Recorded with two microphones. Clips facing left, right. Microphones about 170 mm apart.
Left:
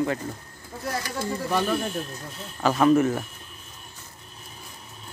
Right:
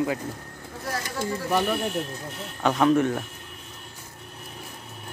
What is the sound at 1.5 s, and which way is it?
Speech, 15° right (ahead or behind).